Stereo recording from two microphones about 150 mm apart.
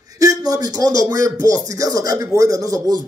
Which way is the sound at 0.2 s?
25° right (ahead or behind).